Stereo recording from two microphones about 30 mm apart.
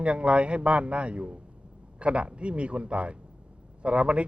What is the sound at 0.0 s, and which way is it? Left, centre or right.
Speech, right.